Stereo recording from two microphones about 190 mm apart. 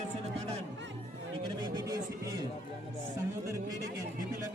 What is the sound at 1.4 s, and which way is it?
Speech, 20° right (ahead or behind).